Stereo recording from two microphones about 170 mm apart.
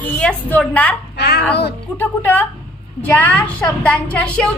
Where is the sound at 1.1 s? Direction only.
70° left (ahead or behind).